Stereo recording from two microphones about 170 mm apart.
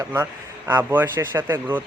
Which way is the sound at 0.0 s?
20° right (ahead or behind).